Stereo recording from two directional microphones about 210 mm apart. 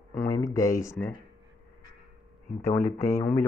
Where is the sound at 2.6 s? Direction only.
15° left (ahead or behind).